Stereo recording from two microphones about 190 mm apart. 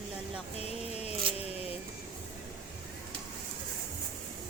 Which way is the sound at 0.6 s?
35° left (ahead or behind).